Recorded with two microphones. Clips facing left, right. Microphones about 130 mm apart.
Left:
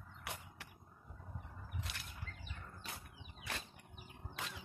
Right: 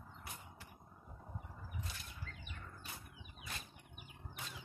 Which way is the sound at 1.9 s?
70° left (ahead or behind).